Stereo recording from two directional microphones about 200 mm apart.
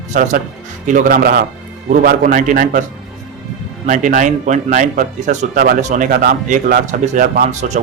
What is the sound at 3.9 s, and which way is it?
A man's voice, 40° right (ahead or behind).